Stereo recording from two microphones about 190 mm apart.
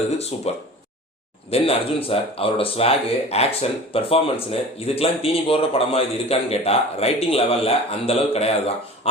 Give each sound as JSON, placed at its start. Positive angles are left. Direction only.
{"t": 0.2, "sound": "a man's voice", "side_deg": 35}